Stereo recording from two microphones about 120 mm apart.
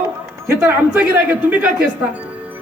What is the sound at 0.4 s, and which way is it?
A woman's voice, 20° right (ahead or behind).